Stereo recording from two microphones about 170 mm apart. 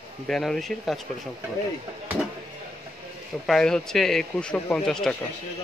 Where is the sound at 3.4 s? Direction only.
5° left (ahead or behind).